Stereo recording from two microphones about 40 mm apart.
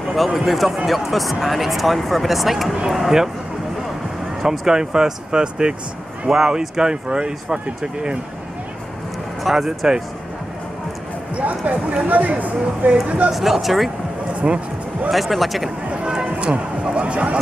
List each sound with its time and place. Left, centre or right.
0.1 s speech: centre
4.4 s speech: centre
9.4 s speech: centre
11.3 s speech: right
13.3 s speech: centre
14.4 s speech: centre
15.0 s speech: centre
15.9 s run: right
16.8 s speech: right